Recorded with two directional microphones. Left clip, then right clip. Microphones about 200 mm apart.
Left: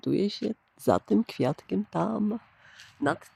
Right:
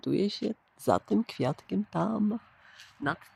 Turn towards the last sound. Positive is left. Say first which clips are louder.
# left 4 dB
turn(degrees=25)  # may be behind; listen again after turning